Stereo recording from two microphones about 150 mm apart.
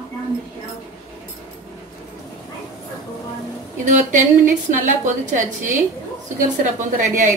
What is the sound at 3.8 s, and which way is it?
A woman's voice, 55° right (ahead or behind).